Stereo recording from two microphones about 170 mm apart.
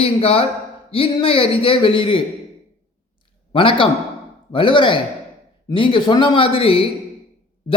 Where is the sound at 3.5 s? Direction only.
30° left (ahead or behind).